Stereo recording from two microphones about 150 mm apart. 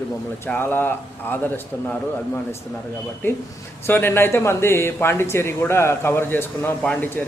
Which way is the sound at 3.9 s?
15° left (ahead or behind).